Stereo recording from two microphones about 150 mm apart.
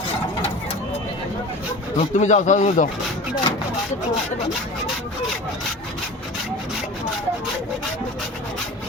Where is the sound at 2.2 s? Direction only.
50° left (ahead or behind).